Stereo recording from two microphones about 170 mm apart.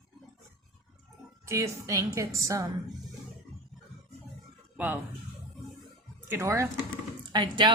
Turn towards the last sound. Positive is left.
turn(degrees=-25)  # may be behind; listen again after turning